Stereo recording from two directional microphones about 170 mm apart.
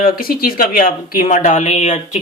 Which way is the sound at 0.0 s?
60° left (ahead or behind).